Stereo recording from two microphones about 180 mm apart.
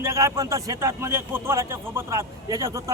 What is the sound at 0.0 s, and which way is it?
A man's voice, 15° right (ahead or behind).